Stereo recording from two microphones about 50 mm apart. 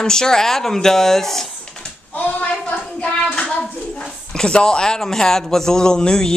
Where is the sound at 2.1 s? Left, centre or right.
Left.